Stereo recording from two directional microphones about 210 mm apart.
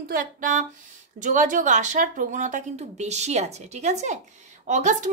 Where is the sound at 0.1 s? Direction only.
40° right (ahead or behind).